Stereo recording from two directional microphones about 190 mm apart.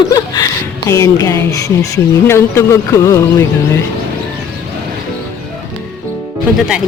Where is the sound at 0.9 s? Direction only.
15° left (ahead or behind).